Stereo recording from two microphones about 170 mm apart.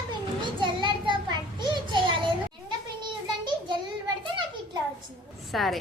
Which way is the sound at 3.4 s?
25° right (ahead or behind).